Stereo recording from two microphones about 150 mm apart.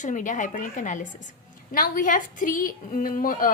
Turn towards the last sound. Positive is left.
turn(degrees=65)  # may be behind; listen again after turning